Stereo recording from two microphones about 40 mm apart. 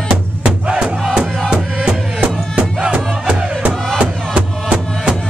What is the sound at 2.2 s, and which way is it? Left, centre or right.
Music, right.